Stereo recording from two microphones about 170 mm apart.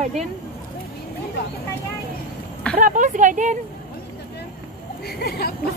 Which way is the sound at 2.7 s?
50° right (ahead or behind).